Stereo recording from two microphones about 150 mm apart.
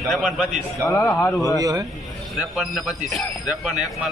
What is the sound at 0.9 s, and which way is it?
Speech, 15° left (ahead or behind).